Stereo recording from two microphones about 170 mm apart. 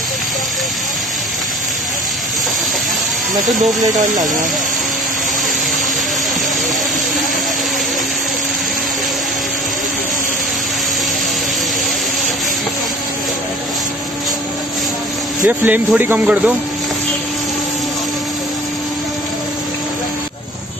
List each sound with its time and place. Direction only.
4.0 s speech: 50° right (ahead or behind)
15.4 s speech: 10° right (ahead or behind)